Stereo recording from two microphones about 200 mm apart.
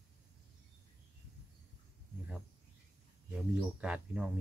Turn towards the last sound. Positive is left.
turn(degrees=-5)  # may be behind; listen again after turning